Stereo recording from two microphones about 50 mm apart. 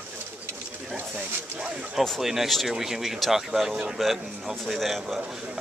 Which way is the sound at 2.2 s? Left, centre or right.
Centre.